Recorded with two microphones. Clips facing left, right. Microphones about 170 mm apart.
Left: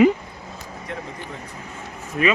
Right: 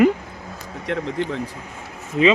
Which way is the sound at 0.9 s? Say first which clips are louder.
Right 8 dB; 85° right.